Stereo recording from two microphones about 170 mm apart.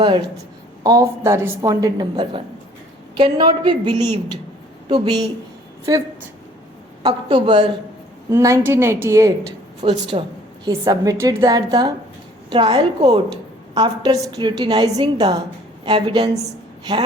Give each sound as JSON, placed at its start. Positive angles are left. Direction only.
{"t": 0.9, "sound": "a woman's voice", "side_deg": -20}
{"t": 5.9, "sound": "a woman's voice", "side_deg": -20}
{"t": 8.3, "sound": "a woman's voice", "side_deg": -20}
{"t": 9.8, "sound": "speech", "side_deg": -30}
{"t": 10.7, "sound": "a woman's voice", "side_deg": -20}